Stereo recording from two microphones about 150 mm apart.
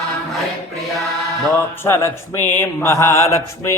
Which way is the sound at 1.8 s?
15° left (ahead or behind).